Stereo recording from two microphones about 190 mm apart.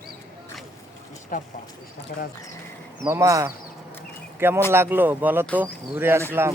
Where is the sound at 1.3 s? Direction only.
45° left (ahead or behind).